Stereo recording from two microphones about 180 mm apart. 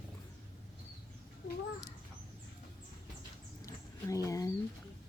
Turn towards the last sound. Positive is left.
turn(degrees=20)  # may be behind; listen again after turning